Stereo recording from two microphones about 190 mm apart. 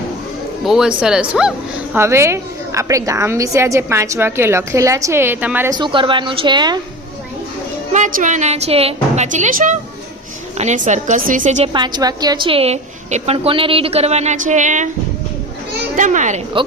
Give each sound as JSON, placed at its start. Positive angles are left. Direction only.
{"t": 0.6, "sound": "a woman's voice", "side_deg": -5}
{"t": 5.7, "sound": "a woman's voice", "side_deg": -25}
{"t": 7.9, "sound": "a woman's voice", "side_deg": -40}
{"t": 11.7, "sound": "a woman's voice", "side_deg": -25}
{"t": 16.0, "sound": "a woman's voice", "side_deg": -40}